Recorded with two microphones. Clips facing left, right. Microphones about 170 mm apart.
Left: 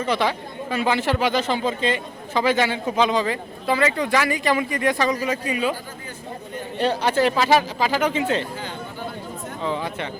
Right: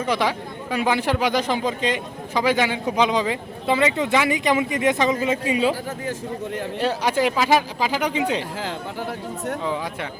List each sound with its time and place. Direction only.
0.0 s speech: 10° right (ahead or behind); by 5.7 s 25° right (ahead or behind)
6.7 s speech: 10° right (ahead or behind)
9.6 s speech: 10° right (ahead or behind)